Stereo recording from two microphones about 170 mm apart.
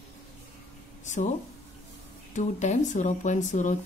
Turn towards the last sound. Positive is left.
turn(degrees=45)  # may be behind; listen again after turning